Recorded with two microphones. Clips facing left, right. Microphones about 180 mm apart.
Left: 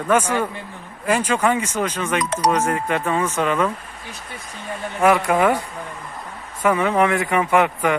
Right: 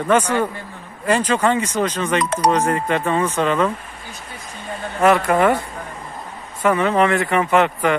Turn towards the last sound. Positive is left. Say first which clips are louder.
# right 1 dB
turn(degrees=10)  # may be behind; listen again after turning